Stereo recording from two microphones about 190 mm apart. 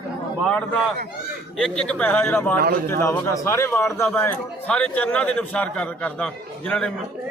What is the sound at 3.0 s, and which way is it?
A man's voice, 15° left (ahead or behind).